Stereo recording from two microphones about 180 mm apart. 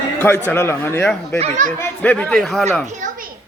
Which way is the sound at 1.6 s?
40° right (ahead or behind).